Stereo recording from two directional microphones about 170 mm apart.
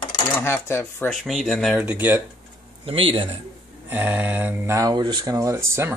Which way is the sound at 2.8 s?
35° right (ahead or behind).